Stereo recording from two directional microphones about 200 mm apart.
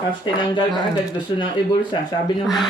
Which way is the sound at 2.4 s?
Centre (ahead or behind).